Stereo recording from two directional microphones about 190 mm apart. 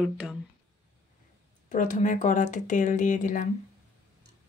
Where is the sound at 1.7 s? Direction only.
40° left (ahead or behind).